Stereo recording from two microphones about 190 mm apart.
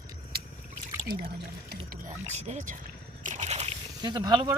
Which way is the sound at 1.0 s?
50° right (ahead or behind).